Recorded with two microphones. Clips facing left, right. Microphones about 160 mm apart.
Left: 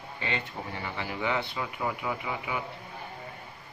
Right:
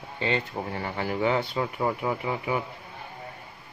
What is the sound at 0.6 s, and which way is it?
Speech, 40° right (ahead or behind).